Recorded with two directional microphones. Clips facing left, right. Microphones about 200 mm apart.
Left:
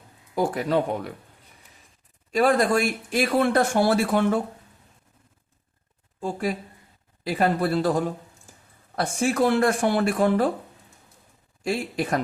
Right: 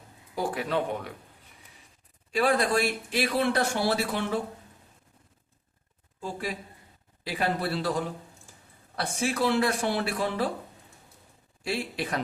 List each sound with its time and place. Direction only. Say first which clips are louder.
0.3 s speech: left 5 dB; 45° left (ahead or behind)
2.3 s speech: left 4 dB; 45° left (ahead or behind)
6.1 s speech: left 7 dB; 45° left (ahead or behind)
11.6 s speech: left 5 dB; 45° left (ahead or behind)